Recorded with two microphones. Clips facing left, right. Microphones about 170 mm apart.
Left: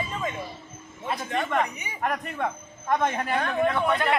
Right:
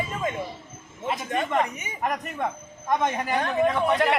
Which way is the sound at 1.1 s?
15° right (ahead or behind).